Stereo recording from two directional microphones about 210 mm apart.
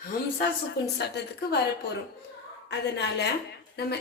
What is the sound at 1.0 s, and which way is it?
Speech, 55° left (ahead or behind).